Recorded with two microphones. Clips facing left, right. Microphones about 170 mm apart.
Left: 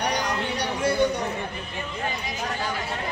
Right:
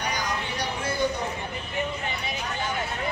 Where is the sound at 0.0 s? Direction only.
70° left (ahead or behind).